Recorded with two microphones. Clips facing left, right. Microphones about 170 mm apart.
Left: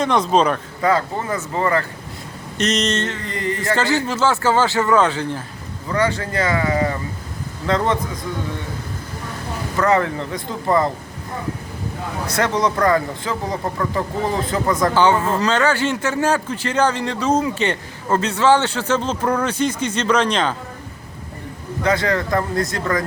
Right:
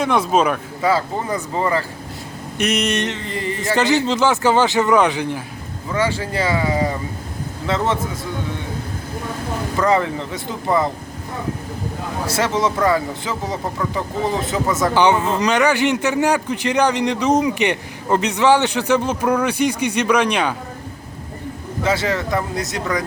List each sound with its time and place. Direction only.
0.0 s a man's voice: 10° right (ahead or behind)
9.7 s speech: 10° right (ahead or behind)
12.2 s speech: 5° right (ahead or behind)
14.9 s a man's voice: 20° right (ahead or behind)
22.1 s a man's voice: 5° right (ahead or behind)